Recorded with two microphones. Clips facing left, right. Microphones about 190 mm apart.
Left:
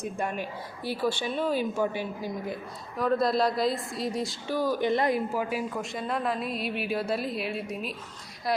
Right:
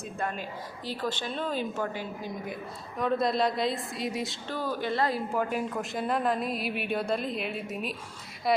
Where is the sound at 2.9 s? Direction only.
Centre (ahead or behind).